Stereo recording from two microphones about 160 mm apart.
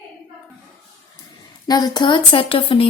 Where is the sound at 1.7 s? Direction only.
25° left (ahead or behind).